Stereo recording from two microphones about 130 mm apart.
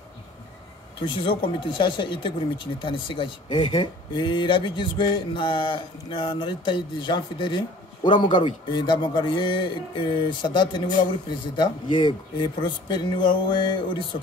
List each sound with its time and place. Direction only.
1.0 s speech: 40° left (ahead or behind)